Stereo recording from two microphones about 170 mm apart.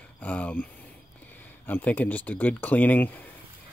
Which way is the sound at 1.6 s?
10° left (ahead or behind).